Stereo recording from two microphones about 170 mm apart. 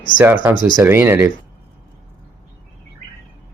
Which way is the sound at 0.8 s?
15° right (ahead or behind).